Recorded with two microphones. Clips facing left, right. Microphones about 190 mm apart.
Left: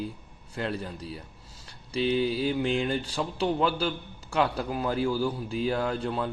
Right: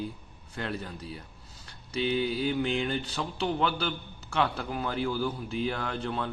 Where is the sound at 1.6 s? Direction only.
30° left (ahead or behind).